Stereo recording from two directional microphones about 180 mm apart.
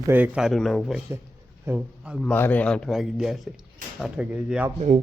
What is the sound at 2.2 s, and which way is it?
Speech, 10° left (ahead or behind).